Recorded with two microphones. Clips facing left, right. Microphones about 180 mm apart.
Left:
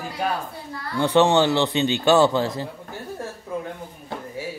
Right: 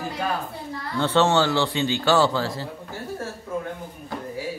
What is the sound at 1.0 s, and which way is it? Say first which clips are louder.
A man's voice: left 3 dB; 15° left (ahead or behind).